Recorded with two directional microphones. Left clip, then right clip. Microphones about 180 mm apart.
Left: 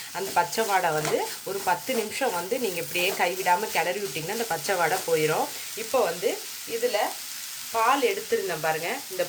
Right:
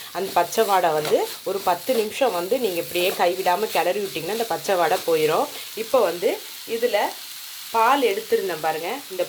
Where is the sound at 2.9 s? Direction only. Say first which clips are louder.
Right 4 dB; 30° right (ahead or behind).